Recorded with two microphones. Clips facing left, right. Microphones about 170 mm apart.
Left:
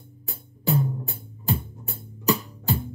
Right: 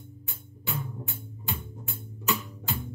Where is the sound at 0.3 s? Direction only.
35° left (ahead or behind).